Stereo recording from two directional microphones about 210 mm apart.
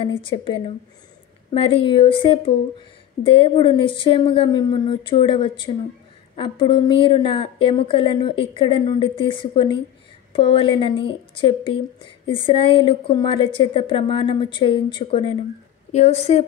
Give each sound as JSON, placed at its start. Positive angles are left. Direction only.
{"t": 0.0, "sound": "a woman's voice", "side_deg": 25}